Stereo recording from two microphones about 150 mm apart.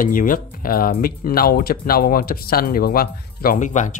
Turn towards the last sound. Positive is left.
turn(degrees=55)  # may be behind; listen again after turning